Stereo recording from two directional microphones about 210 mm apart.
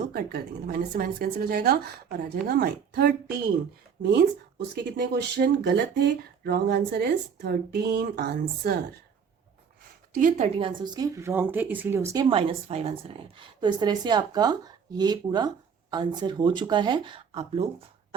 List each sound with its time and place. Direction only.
0.1 s speech: 45° right (ahead or behind)
10.2 s speech: 35° right (ahead or behind)